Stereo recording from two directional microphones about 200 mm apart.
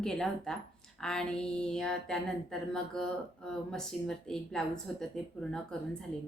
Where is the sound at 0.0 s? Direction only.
5° left (ahead or behind).